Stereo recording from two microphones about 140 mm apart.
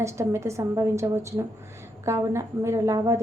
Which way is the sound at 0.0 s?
20° right (ahead or behind).